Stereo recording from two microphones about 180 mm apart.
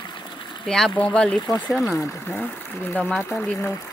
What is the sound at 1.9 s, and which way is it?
Speech, 15° left (ahead or behind).